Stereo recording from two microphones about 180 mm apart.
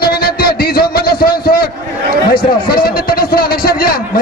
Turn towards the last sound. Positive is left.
turn(degrees=55)  # may be behind; listen again after turning